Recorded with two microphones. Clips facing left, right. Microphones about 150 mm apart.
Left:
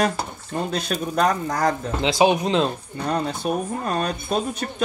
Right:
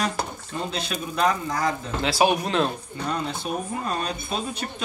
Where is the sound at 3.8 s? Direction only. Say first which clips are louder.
Left 4 dB; 45° left (ahead or behind).